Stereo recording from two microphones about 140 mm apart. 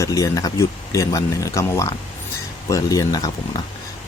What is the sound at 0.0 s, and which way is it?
Speech, 25° left (ahead or behind).